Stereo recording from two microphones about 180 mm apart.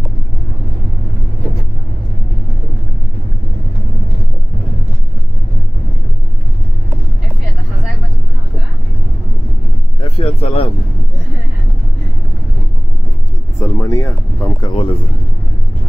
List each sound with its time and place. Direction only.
9.9 s vehicle: 30° left (ahead or behind)
13.6 s a sound: 15° left (ahead or behind)
14.7 s speech: 30° left (ahead or behind)